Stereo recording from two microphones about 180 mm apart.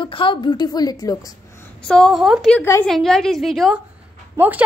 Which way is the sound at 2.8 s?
Centre (ahead or behind).